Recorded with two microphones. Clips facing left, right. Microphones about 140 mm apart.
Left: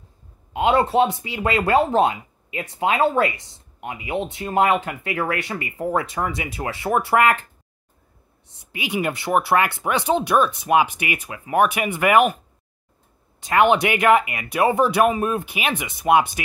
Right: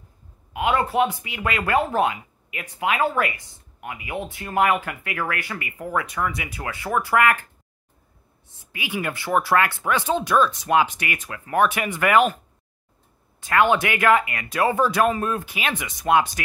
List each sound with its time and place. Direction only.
0.5 s speech: 25° left (ahead or behind)
8.7 s speech: 20° left (ahead or behind)
13.4 s speech: 20° left (ahead or behind)